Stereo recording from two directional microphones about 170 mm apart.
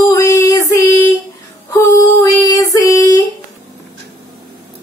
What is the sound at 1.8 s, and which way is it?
Female singing, 20° left (ahead or behind).